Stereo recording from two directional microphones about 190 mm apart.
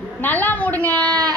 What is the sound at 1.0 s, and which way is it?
Speech, 20° right (ahead or behind).